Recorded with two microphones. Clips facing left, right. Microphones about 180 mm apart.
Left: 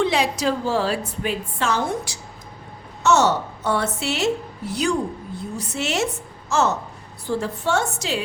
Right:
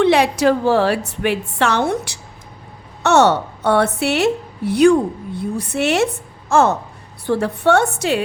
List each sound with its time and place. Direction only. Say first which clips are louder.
0.0 s a woman's voice: right 7 dB; 65° right (ahead or behind)